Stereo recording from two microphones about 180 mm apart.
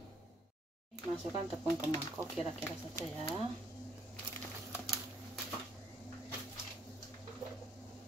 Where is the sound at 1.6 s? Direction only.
20° left (ahead or behind).